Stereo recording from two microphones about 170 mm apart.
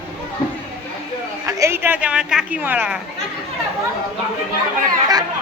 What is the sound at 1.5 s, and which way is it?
Speech, 15° right (ahead or behind).